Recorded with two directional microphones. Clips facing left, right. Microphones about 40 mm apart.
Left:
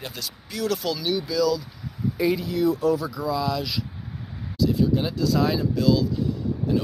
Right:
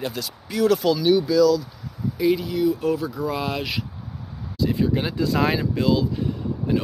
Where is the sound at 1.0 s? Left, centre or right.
Centre.